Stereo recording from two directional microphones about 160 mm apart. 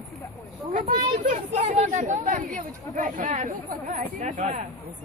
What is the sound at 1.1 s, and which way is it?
Speech, 50° right (ahead or behind).